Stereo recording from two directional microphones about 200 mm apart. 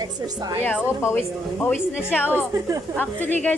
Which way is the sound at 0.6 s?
10° left (ahead or behind).